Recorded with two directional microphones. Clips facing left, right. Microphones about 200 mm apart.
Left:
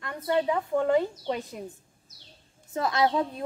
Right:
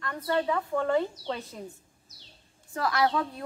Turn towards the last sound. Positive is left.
turn(degrees=20)  # may be behind; listen again after turning